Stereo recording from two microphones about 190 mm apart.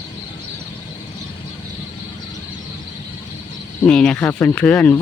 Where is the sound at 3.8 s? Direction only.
5° left (ahead or behind).